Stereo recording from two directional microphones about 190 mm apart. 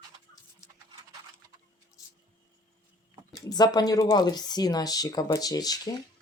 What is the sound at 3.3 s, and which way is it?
Speech, 20° left (ahead or behind).